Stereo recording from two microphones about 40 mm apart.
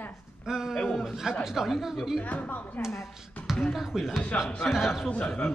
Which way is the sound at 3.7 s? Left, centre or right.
Centre.